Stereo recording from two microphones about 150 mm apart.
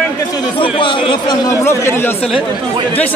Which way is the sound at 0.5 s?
35° left (ahead or behind).